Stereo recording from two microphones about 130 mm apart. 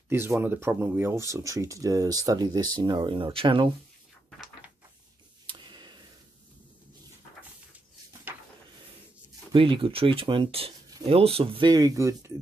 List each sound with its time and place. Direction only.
0.1 s speech: 20° right (ahead or behind); by 3.7 s 40° right (ahead or behind)
5.5 s a sound: 35° right (ahead or behind)
9.5 s speech: 40° right (ahead or behind)
11.7 s speech: 30° right (ahead or behind)